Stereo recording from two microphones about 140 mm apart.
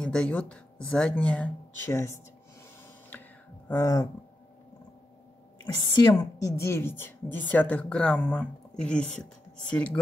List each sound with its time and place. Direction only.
0.0 s a woman's voice: 5° left (ahead or behind)
3.6 s a sound: 20° left (ahead or behind)
5.7 s a woman's voice: 25° left (ahead or behind); by 9.9 s 10° left (ahead or behind)